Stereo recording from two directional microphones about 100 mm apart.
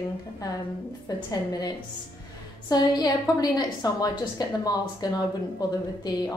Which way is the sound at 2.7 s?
40° left (ahead or behind).